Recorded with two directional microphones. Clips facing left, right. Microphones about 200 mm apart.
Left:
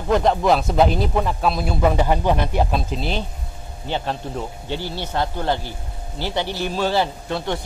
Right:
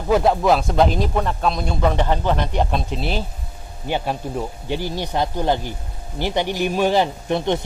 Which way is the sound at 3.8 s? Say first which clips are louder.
Right 2 dB; 10° right (ahead or behind).